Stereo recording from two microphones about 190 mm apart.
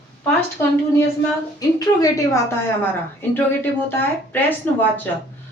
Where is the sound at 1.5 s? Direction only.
20° left (ahead or behind).